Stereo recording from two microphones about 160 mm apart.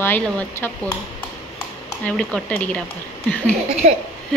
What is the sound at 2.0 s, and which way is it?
Speech, 10° left (ahead or behind).